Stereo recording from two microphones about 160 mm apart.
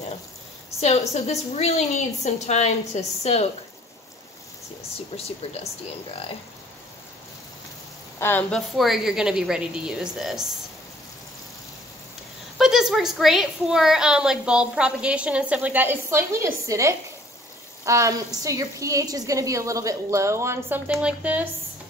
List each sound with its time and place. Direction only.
0.7 s a woman's voice: 40° left (ahead or behind)
4.9 s speech: 40° left (ahead or behind)
8.2 s a woman's voice: 10° left (ahead or behind)
12.5 s a woman's voice: centre (ahead or behind)